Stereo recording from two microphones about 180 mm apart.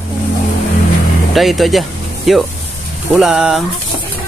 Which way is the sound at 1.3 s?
Centre (ahead or behind).